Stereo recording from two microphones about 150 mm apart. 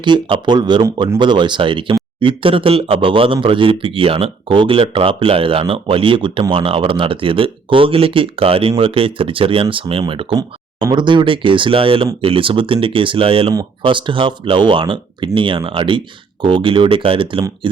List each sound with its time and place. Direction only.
0.0 s speech: 30° right (ahead or behind)